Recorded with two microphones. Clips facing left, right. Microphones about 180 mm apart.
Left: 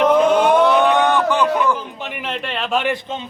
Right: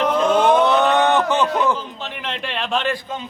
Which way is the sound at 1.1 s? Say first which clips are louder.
Left 1 dB; 20° right (ahead or behind).